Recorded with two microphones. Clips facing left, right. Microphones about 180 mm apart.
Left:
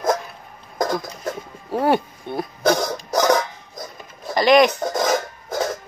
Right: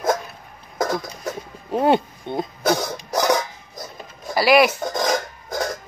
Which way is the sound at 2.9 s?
10° right (ahead or behind).